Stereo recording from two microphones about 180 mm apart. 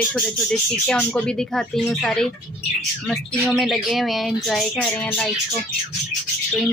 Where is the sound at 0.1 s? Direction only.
5° left (ahead or behind).